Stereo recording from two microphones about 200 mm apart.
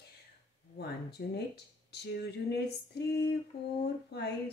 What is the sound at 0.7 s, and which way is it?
Speech, 55° left (ahead or behind).